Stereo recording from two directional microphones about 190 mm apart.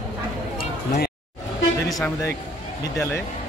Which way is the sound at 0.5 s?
50° left (ahead or behind).